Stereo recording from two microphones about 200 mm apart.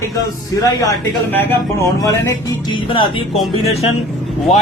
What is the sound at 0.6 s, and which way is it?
A man's voice, 15° left (ahead or behind).